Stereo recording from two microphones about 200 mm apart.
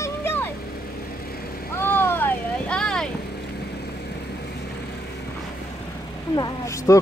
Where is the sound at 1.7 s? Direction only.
10° left (ahead or behind).